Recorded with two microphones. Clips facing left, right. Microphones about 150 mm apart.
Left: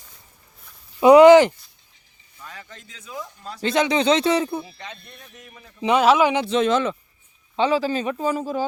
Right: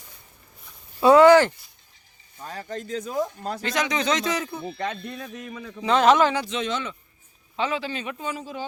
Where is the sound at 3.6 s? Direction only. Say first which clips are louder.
Left 7 dB; 30° left (ahead or behind).